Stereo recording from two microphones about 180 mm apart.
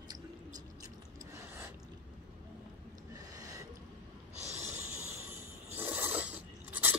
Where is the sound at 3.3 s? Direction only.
20° right (ahead or behind).